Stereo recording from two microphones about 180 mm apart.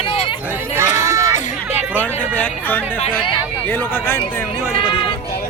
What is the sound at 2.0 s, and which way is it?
Speech, 10° left (ahead or behind).